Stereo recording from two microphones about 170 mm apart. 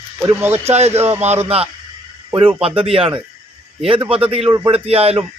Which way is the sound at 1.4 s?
35° right (ahead or behind).